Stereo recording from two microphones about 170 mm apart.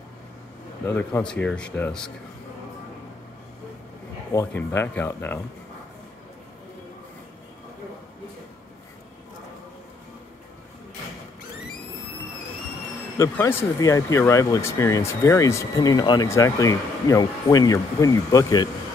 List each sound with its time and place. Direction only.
0.8 s speech: 15° left (ahead or behind)
4.5 s speech: 10° left (ahead or behind)
13.2 s speech: 15° left (ahead or behind)